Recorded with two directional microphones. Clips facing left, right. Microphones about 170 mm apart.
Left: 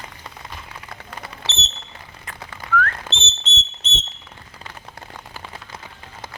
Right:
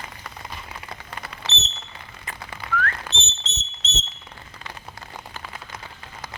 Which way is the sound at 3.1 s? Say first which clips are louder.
Left 3 dB; 60° left (ahead or behind).